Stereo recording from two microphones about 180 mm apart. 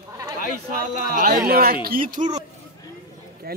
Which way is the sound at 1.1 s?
55° right (ahead or behind).